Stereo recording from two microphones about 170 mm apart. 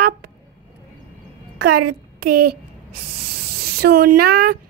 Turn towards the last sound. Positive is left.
turn(degrees=-60)  # may be behind; listen again after turning